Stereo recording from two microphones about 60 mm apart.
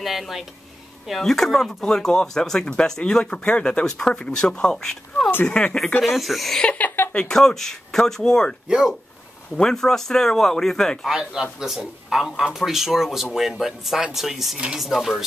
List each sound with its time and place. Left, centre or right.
0.0 s speech: centre
6.0 s speech: centre
6.6 s speech: centre
8.6 s speech: centre
9.6 s speech: centre
11.1 s speech: centre